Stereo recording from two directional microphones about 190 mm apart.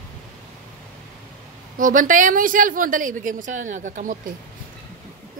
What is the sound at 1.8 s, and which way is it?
A woman's voice, 45° right (ahead or behind).